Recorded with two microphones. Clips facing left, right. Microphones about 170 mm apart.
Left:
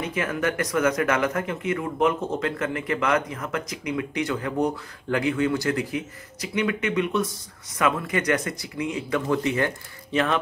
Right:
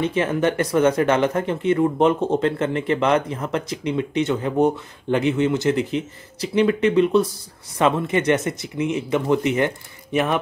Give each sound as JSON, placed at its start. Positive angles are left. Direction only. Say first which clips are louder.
{"t": 0.0, "sound": "speech", "louder": "right 6 dB", "side_deg": -30}